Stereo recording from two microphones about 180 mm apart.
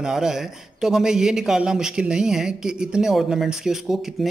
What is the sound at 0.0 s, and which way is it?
Speech, 5° right (ahead or behind).